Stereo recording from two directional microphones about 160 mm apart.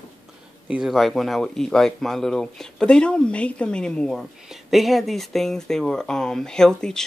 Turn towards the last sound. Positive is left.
turn(degrees=5)  # may be behind; listen again after turning